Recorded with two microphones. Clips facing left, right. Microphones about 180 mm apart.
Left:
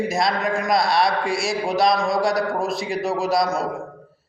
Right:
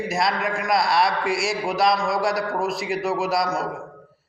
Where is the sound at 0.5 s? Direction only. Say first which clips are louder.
Left 1 dB; 20° left (ahead or behind).